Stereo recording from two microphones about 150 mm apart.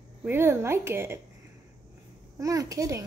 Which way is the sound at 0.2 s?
15° right (ahead or behind).